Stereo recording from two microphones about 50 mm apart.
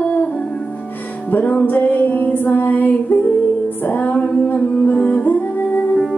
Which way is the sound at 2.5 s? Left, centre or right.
Left.